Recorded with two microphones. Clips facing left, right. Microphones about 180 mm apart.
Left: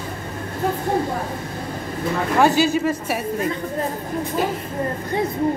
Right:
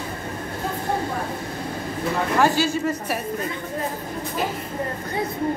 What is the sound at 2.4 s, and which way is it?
Speech, 15° left (ahead or behind).